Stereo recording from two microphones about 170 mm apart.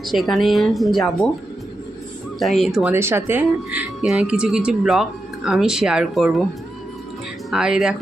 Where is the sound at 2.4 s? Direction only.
Centre (ahead or behind).